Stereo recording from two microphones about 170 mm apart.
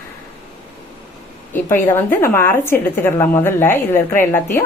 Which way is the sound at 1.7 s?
15° left (ahead or behind).